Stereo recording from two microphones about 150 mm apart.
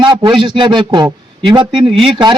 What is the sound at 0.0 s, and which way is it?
A man's voice, 30° right (ahead or behind).